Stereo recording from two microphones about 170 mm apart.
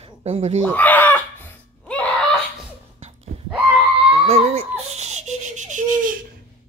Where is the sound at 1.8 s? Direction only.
10° left (ahead or behind).